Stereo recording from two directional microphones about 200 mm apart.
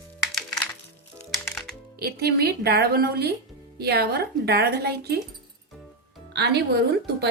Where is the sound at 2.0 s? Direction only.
50° right (ahead or behind).